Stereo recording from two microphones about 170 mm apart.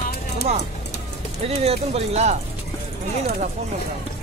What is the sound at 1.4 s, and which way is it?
Speech, 35° right (ahead or behind).